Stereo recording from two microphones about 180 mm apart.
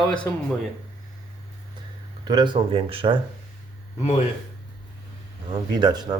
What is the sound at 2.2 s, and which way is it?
Speech, 25° right (ahead or behind).